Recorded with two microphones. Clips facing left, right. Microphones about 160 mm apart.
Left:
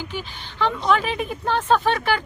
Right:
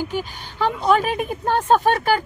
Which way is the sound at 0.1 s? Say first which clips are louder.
Right 5 dB; 45° right (ahead or behind).